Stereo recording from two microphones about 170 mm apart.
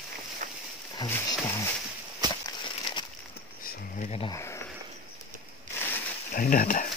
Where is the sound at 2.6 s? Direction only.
30° left (ahead or behind).